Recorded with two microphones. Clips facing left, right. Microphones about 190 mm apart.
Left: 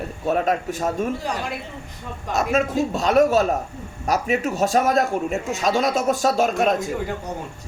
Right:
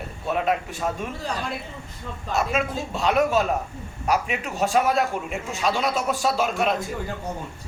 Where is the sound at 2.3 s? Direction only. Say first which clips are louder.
Left 4 dB; 40° left (ahead or behind).